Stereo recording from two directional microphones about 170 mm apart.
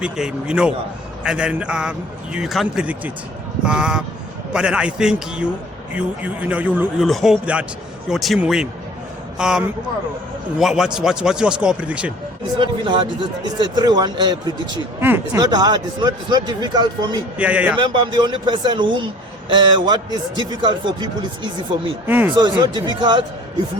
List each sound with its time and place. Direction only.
0.0 s a man's voice: 5° right (ahead or behind)
12.5 s a man's voice: 30° right (ahead or behind)
15.0 s a man's voice: 15° right (ahead or behind)
17.3 s a man's voice: 10° right (ahead or behind)
17.7 s a man's voice: 30° right (ahead or behind)
22.0 s a man's voice: 10° right (ahead or behind)
22.4 s a man's voice: 25° right (ahead or behind)